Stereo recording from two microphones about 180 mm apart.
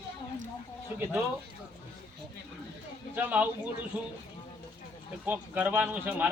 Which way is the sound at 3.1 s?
10° right (ahead or behind).